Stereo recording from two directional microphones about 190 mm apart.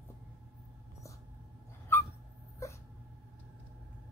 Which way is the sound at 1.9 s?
10° left (ahead or behind).